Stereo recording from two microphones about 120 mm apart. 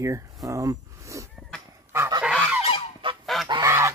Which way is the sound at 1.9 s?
20° right (ahead or behind).